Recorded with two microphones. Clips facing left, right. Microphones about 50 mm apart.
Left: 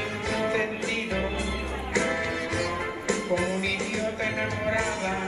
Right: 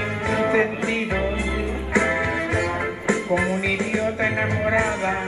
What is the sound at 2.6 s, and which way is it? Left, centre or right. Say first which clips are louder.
Music: right 5 dB; right.